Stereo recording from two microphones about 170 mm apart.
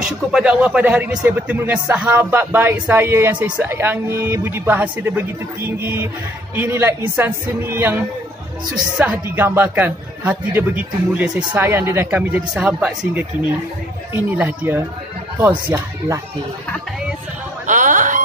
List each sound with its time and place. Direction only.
0.0 s speech: 5° right (ahead or behind)
17.6 s chicken: 50° right (ahead or behind)